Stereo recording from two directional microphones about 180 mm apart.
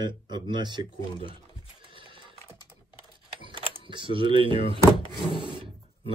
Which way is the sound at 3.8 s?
30° right (ahead or behind).